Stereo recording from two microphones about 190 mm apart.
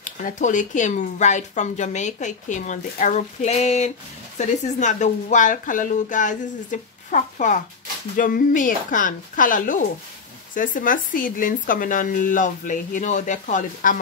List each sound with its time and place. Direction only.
0.0 s speech: 40° left (ahead or behind)